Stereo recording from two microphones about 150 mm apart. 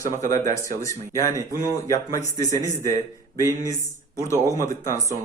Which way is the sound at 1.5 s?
25° left (ahead or behind).